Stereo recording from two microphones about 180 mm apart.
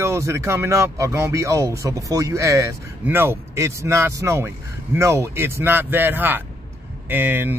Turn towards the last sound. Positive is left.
turn(degrees=-10)  # may be behind; listen again after turning